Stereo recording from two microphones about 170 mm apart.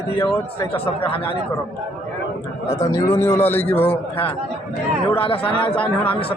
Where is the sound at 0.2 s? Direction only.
30° left (ahead or behind).